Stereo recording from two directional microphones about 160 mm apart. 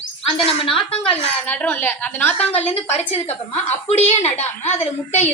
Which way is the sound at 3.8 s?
45° left (ahead or behind).